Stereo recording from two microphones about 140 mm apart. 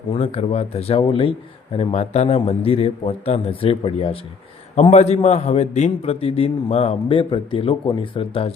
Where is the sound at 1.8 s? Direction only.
50° left (ahead or behind).